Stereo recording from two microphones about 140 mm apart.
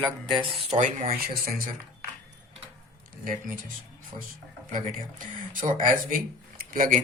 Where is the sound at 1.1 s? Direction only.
90° right.